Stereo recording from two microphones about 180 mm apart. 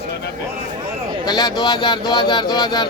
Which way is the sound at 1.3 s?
20° left (ahead or behind).